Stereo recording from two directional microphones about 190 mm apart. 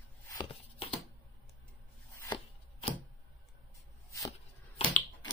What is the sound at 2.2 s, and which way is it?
Chopping, 25° left (ahead or behind).